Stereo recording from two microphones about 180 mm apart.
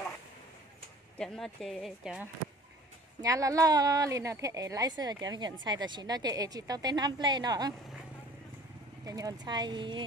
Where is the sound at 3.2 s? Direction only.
20° right (ahead or behind).